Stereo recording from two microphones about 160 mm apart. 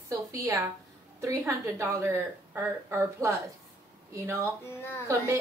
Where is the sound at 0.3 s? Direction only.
20° right (ahead or behind).